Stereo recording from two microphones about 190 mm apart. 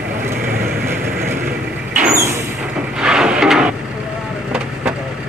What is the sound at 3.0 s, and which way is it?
Vehicle, 5° right (ahead or behind).